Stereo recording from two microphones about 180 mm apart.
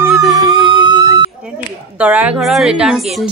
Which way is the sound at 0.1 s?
Centre (ahead or behind).